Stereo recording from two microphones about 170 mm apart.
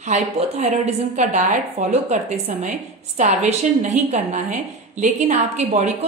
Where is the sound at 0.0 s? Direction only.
40° right (ahead or behind).